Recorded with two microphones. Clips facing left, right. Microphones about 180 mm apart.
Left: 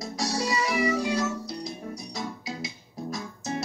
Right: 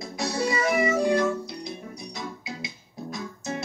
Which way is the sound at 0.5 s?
50° right (ahead or behind).